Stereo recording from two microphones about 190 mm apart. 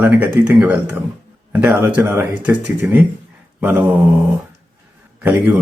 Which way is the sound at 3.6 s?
10° right (ahead or behind).